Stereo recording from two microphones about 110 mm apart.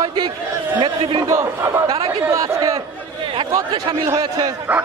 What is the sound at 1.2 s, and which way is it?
Speech, 25° right (ahead or behind).